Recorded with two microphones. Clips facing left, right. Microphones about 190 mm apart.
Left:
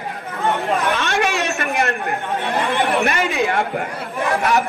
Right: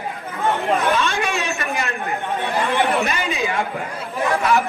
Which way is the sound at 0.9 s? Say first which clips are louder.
Left 1 dB; 55° left (ahead or behind).